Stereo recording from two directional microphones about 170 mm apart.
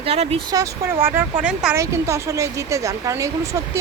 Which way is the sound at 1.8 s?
20° right (ahead or behind).